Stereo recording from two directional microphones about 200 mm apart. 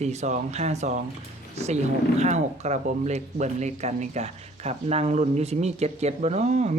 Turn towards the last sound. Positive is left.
turn(degrees=-35)  # may be behind; listen again after turning